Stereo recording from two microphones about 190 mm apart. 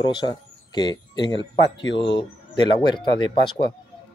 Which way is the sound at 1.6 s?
70° left (ahead or behind).